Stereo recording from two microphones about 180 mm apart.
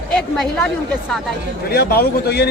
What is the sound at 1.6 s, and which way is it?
Speech, 60° left (ahead or behind).